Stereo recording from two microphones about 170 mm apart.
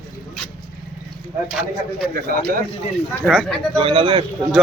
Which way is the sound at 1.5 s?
Centre (ahead or behind).